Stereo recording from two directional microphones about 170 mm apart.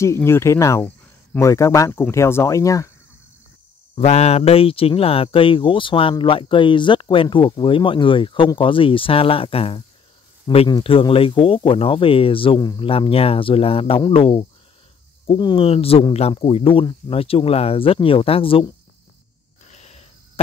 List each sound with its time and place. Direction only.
0.0 s speech: 15° left (ahead or behind)
3.9 s speech: 40° left (ahead or behind)
19.7 s a sound: 40° left (ahead or behind)